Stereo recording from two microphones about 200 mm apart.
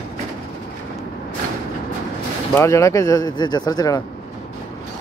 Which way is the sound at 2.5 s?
15° left (ahead or behind).